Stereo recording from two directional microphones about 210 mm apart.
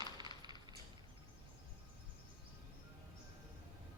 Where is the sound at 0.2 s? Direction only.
20° right (ahead or behind).